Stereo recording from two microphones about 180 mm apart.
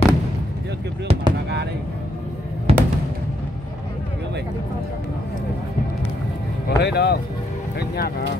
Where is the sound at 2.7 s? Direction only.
35° right (ahead or behind).